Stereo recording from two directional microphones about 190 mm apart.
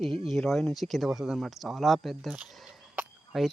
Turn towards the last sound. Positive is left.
turn(degrees=0)  # may be behind; listen again after turning